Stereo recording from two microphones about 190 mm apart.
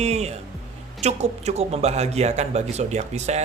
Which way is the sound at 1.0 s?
35° right (ahead or behind).